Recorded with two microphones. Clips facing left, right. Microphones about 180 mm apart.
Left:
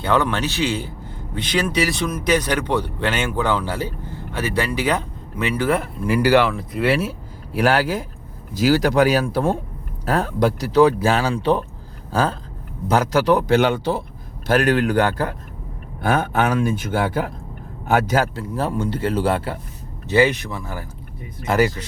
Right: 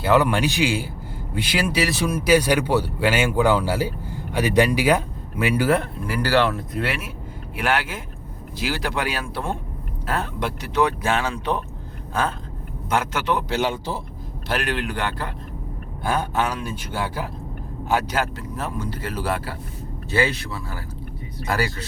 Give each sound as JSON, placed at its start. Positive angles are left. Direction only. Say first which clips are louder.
{"t": 0.0, "sound": "speech", "louder": "right 2 dB", "side_deg": -5}
{"t": 6.1, "sound": "speech", "louder": "left 5 dB", "side_deg": 15}
{"t": 6.5, "sound": "speech", "louder": "left 1 dB", "side_deg": 0}
{"t": 7.5, "sound": "speech", "louder": "left 6 dB", "side_deg": 35}
{"t": 12.9, "sound": "speech", "louder": "left 6 dB", "side_deg": 35}
{"t": 13.5, "sound": "speech", "louder": "left 7 dB", "side_deg": 65}
{"t": 14.4, "sound": "speech", "louder": "left 8 dB", "side_deg": 45}
{"t": 16.0, "sound": "speech", "louder": "left 4 dB", "side_deg": 60}
{"t": 18.3, "sound": "a man's voice", "louder": "left 6 dB", "side_deg": 30}